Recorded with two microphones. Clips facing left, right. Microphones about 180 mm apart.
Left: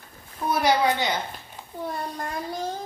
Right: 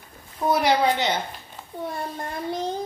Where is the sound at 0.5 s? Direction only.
25° right (ahead or behind).